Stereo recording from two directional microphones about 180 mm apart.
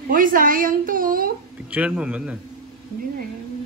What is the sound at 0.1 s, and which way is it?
A woman's voice, 50° right (ahead or behind).